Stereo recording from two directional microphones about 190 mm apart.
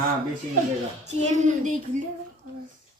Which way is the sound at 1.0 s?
35° right (ahead or behind).